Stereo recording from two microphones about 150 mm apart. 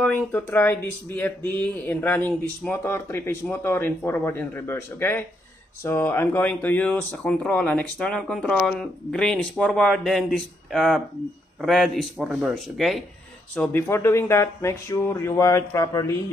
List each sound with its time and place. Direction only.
0.0 s speech: 10° left (ahead or behind)
13.6 s speech: 15° left (ahead or behind)